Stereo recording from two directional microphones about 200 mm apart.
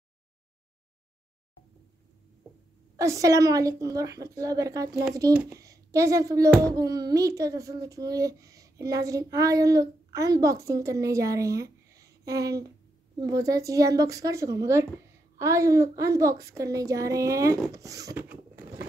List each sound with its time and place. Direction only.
3.0 s a child's voice: 15° right (ahead or behind)
5.3 s a child's voice: 5° right (ahead or behind)
11.9 s a sound: 15° right (ahead or behind)
13.2 s a child's voice: 15° right (ahead or behind)
17.6 s zipper: 15° right (ahead or behind)